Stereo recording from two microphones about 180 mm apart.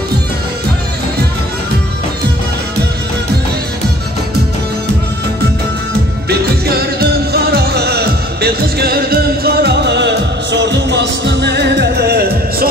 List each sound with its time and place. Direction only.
6.2 s music: 60° right (ahead or behind)